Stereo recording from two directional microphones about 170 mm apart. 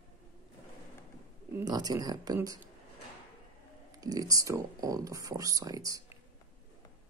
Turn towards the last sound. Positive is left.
turn(degrees=-20)  # may be behind; listen again after turning